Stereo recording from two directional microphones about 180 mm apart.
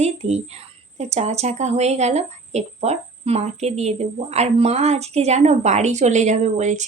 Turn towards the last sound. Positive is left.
turn(degrees=-40)  # may be behind; listen again after turning